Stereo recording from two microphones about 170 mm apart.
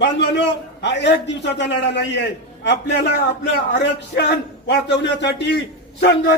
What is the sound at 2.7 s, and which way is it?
A man's voice, 75° left (ahead or behind).